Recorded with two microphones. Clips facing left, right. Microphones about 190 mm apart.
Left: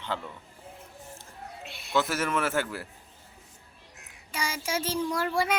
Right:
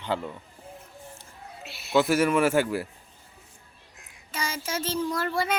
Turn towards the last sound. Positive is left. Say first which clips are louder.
# even
turn(degrees=10)  # may be behind; listen again after turning